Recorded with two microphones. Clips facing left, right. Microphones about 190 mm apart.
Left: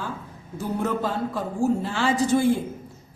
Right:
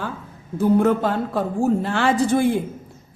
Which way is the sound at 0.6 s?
60° right (ahead or behind).